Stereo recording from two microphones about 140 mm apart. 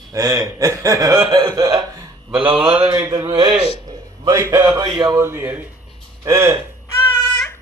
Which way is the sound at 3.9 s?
25° right (ahead or behind).